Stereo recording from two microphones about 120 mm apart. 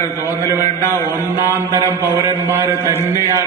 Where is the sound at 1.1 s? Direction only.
20° right (ahead or behind).